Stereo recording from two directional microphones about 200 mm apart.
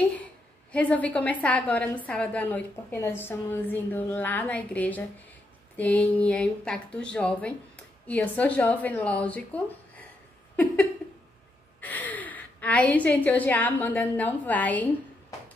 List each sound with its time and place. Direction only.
0.1 s speech: 5° left (ahead or behind)
10.5 s a sound: 10° left (ahead or behind)
11.8 s a woman's voice: 10° left (ahead or behind)